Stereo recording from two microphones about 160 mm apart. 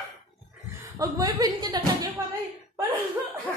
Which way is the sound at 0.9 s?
20° right (ahead or behind).